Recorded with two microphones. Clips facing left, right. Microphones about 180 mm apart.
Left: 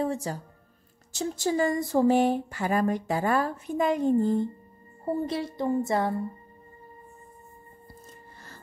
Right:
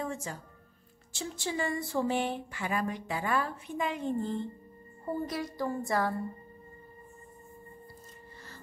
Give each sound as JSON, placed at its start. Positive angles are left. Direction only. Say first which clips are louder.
{"t": 0.0, "sound": "a woman's voice", "louder": "left 8 dB", "side_deg": 35}
{"t": 5.0, "sound": "a woman's voice", "louder": "left 5 dB", "side_deg": 25}